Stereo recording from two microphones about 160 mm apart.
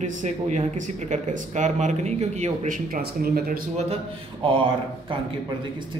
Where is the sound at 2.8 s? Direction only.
70° right (ahead or behind).